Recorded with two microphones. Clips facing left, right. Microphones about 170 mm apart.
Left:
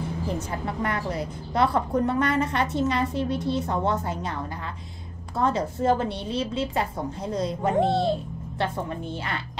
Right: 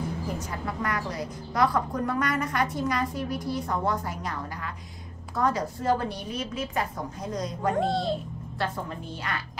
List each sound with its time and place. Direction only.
0.7 s a woman's voice: 25° left (ahead or behind)
9.1 s a woman's voice: 25° left (ahead or behind)